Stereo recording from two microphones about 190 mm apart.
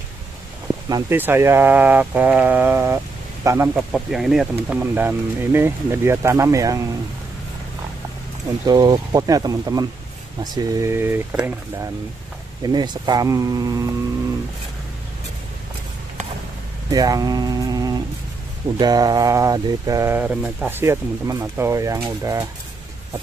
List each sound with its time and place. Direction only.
0.8 s speech: 20° right (ahead or behind)
3.9 s speech: centre (ahead or behind); by 6.9 s 15° right (ahead or behind)
8.6 s speech: 20° right (ahead or behind)
12.6 s speech: 20° right (ahead or behind)
16.9 s speech: 20° right (ahead or behind)